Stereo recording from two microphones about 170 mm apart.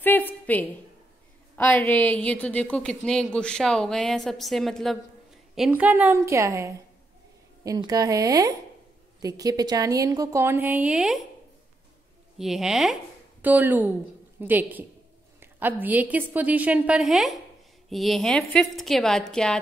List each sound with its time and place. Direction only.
0.0 s a sound: 10° left (ahead or behind)
1.6 s a woman's voice: 10° left (ahead or behind)
12.4 s a woman's voice: centre (ahead or behind)